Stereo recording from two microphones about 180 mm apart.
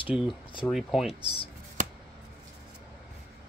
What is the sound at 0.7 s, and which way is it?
Speech, centre (ahead or behind).